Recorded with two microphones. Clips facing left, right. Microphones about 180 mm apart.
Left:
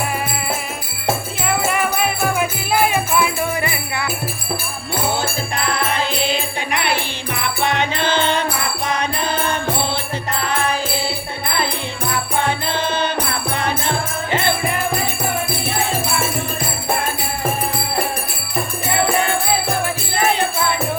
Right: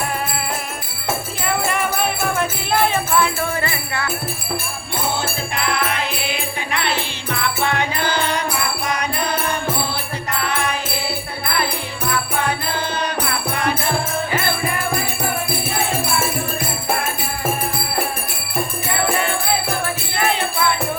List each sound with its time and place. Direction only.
1.5 s music: centre (ahead or behind)
5.5 s music: 35° left (ahead or behind)
6.7 s music: 15° left (ahead or behind)
10.4 s music: 30° left (ahead or behind)
12.5 s music: 25° left (ahead or behind)